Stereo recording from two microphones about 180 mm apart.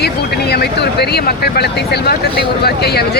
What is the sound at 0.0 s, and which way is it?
Speech, 65° left (ahead or behind).